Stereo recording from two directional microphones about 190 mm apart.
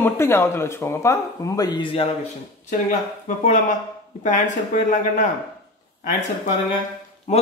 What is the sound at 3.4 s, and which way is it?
Speech, 40° left (ahead or behind).